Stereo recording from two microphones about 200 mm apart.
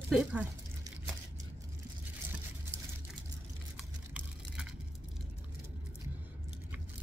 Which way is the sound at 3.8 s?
5° right (ahead or behind).